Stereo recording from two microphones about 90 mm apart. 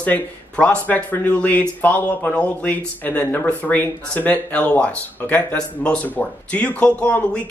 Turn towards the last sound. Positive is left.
turn(degrees=15)  # may be behind; listen again after turning